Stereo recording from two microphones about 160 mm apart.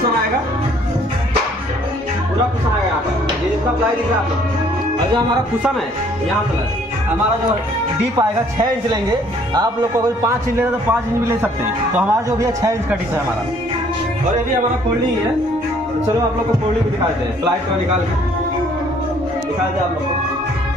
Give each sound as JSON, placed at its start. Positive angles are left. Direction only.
{"t": 8.2, "sound": "a man's voice", "side_deg": -25}